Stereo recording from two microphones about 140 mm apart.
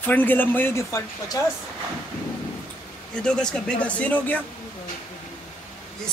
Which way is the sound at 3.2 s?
5° left (ahead or behind).